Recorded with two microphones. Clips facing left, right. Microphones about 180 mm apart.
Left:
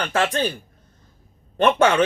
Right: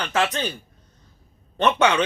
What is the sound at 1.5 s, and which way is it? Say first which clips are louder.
Speech: left 3 dB; 50° left (ahead or behind).